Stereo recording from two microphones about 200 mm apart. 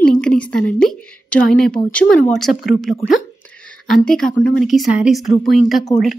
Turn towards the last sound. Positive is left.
turn(degrees=0)  # may be behind; listen again after turning